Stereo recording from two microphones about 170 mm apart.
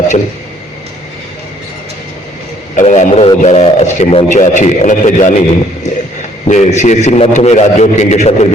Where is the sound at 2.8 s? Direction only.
45° left (ahead or behind).